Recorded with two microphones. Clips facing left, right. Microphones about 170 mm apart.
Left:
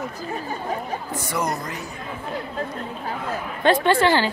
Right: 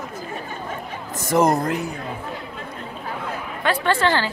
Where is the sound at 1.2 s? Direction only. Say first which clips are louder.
Right 10 dB; 45° right (ahead or behind).